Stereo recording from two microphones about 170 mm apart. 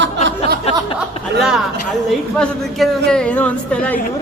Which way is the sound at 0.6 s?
35° left (ahead or behind).